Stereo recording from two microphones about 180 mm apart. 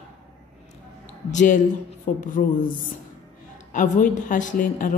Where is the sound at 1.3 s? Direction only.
45° left (ahead or behind).